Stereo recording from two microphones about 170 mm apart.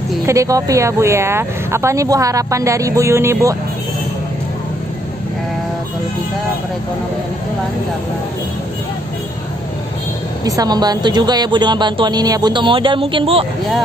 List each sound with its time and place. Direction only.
0.3 s speech: 20° right (ahead or behind)
10.4 s a woman's voice: 20° right (ahead or behind)